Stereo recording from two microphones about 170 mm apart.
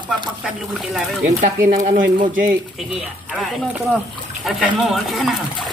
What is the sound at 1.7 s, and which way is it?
Speech, 45° right (ahead or behind).